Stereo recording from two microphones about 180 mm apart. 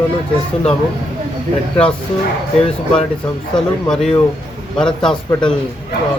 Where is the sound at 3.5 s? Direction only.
5° left (ahead or behind).